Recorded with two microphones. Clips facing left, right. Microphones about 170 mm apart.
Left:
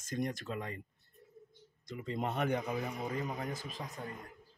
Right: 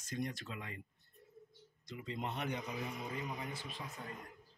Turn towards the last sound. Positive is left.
turn(degrees=40)  # may be behind; listen again after turning